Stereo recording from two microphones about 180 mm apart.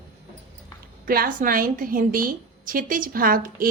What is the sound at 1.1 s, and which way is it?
A woman's voice, 50° right (ahead or behind).